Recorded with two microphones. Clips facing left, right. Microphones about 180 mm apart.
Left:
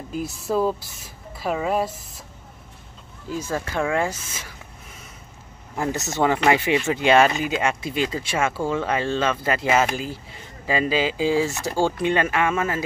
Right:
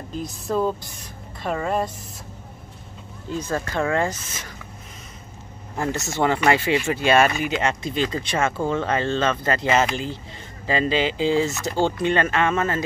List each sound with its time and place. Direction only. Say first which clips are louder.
0.1 s speech: left 1 dB; 5° left (ahead or behind)
3.3 s speech: right 1 dB; 5° left (ahead or behind)
6.2 s speech: even; 15° left (ahead or behind)